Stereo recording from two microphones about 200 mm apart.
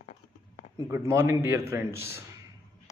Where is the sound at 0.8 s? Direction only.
10° right (ahead or behind).